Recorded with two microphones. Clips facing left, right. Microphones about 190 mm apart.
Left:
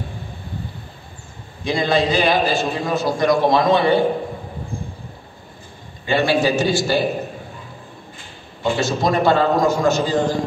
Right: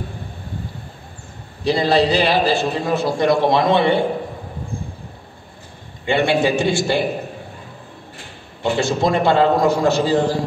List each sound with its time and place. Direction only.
1.6 s a man's voice: 35° right (ahead or behind)
6.0 s a man's voice: 25° right (ahead or behind)
8.7 s a man's voice: 30° right (ahead or behind)